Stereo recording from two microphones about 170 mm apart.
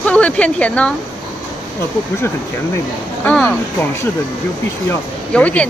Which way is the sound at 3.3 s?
5° left (ahead or behind).